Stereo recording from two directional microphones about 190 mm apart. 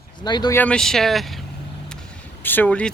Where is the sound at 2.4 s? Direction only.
10° left (ahead or behind).